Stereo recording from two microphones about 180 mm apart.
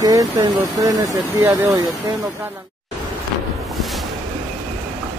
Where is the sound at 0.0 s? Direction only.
20° right (ahead or behind).